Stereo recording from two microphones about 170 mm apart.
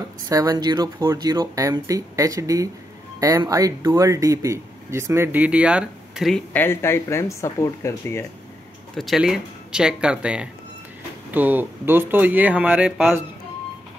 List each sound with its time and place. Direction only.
0.3 s speech: 20° right (ahead or behind); by 6.4 s centre (ahead or behind)
6.5 s speech: 15° left (ahead or behind)
8.9 s speech: centre (ahead or behind)